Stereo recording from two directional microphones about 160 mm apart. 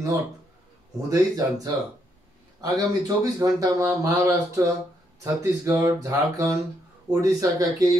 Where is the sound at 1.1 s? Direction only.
20° right (ahead or behind).